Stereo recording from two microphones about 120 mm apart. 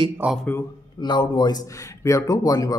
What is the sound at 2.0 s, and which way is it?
Speech, 25° left (ahead or behind).